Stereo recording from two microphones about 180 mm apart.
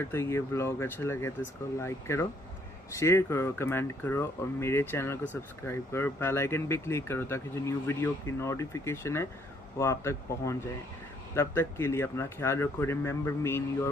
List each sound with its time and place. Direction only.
0.0 s speech: 15° left (ahead or behind)